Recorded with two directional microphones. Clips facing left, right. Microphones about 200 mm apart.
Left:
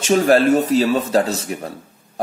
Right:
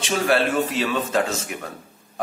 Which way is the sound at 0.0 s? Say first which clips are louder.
Left 7 dB; 40° left (ahead or behind).